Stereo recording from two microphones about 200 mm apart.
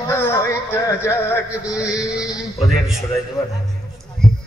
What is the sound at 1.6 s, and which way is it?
A man's voice, 5° right (ahead or behind).